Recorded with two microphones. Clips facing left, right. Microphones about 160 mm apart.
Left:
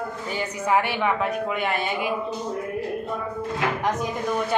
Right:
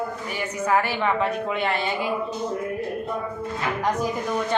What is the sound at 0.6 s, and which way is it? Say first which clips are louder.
Speech: even; 20° left (ahead or behind).